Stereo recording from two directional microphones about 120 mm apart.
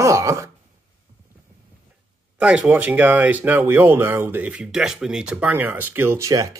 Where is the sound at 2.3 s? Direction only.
10° right (ahead or behind).